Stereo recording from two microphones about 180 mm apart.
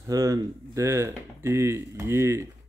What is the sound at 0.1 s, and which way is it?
Speech, 15° right (ahead or behind).